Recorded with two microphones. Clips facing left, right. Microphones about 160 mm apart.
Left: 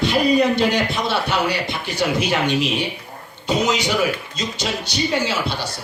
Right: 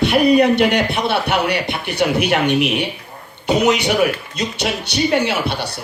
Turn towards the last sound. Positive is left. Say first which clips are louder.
# right 3 dB
turn(degrees=-65)  # may be behind; listen again after turning